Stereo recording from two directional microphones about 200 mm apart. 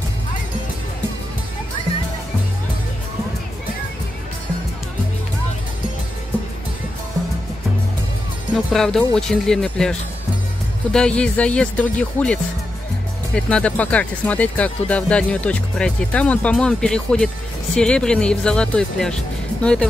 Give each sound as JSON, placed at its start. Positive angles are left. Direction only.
{"t": 8.5, "sound": "speech", "side_deg": 0}